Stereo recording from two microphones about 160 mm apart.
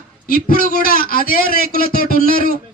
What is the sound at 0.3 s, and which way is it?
A man's voice, 65° left (ahead or behind).